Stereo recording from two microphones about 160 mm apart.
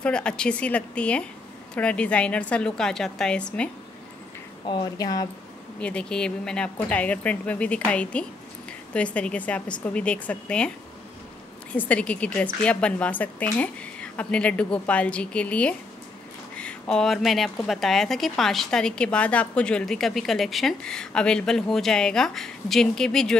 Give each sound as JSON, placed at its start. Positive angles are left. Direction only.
{"t": 0.0, "sound": "a woman's voice", "side_deg": 5}
{"t": 4.6, "sound": "speech", "side_deg": 25}
{"t": 5.8, "sound": "a woman's voice", "side_deg": 5}
{"t": 11.7, "sound": "a woman's voice", "side_deg": 10}